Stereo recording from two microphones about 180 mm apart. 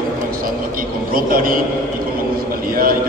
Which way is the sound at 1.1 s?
50° right (ahead or behind).